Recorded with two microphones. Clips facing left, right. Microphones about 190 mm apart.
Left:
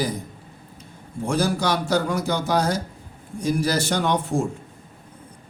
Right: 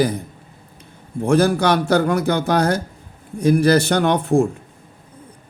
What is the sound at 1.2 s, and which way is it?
Speech, 60° right (ahead or behind).